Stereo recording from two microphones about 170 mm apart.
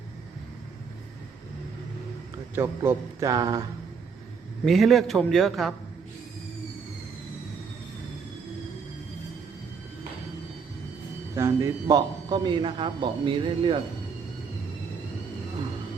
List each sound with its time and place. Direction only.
2.6 s a man's voice: 15° right (ahead or behind)
4.6 s a man's voice: centre (ahead or behind)
11.3 s a man's voice: 15° right (ahead or behind)